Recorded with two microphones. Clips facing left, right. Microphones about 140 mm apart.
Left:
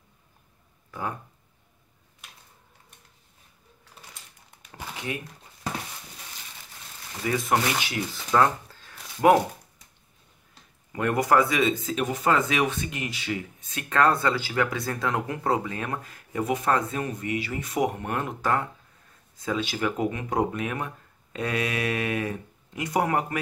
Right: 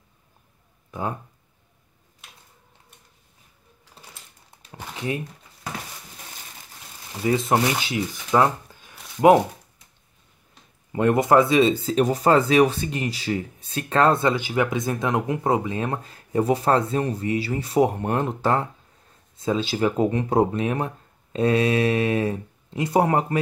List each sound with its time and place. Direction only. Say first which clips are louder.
0.9 s speech: right 4 dB; 20° right (ahead or behind)
7.2 s speech: right 4 dB; 25° right (ahead or behind)
10.9 s speech: right 5 dB; 25° right (ahead or behind)